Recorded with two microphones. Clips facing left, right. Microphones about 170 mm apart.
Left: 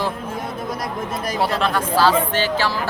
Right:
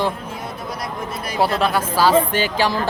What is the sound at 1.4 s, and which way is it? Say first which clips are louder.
Speech: right 3 dB; 5° right (ahead or behind).